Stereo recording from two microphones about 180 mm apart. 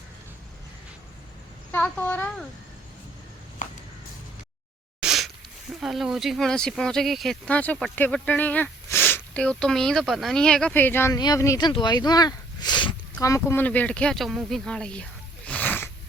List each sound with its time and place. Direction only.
1.7 s speech: 10° left (ahead or behind)
3.6 s walk: 45° left (ahead or behind)
4.9 s a sound: centre (ahead or behind)
5.8 s speech: centre (ahead or behind); by 13.0 s 25° left (ahead or behind)
13.2 s speech: 15° left (ahead or behind)
15.4 s cat: 10° left (ahead or behind)